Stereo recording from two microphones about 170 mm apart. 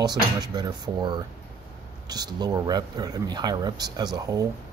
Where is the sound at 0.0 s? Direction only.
25° right (ahead or behind).